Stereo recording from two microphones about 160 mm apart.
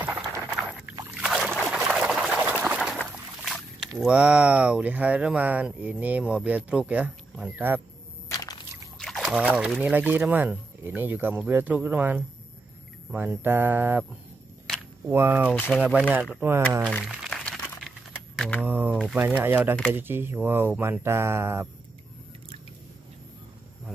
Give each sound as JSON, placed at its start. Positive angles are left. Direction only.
{"t": 0.0, "sound": "a sound", "side_deg": -5}
{"t": 4.0, "sound": "speech", "side_deg": -5}
{"t": 8.3, "sound": "a sound", "side_deg": 25}
{"t": 8.9, "sound": "a sound", "side_deg": 0}
{"t": 9.7, "sound": "speech", "side_deg": -5}
{"t": 15.0, "sound": "speech", "side_deg": -15}
{"t": 16.8, "sound": "crumpling", "side_deg": 0}
{"t": 18.4, "sound": "speech", "side_deg": 5}
{"t": 18.7, "sound": "speech", "side_deg": -10}